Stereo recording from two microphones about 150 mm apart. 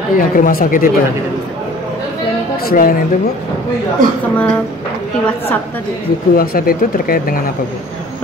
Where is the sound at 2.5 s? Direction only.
75° left (ahead or behind).